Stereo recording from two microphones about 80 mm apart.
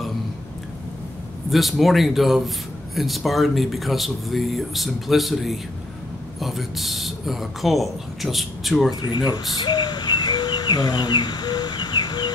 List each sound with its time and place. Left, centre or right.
1.5 s speech: centre
9.0 s speech: left
9.5 s bird: left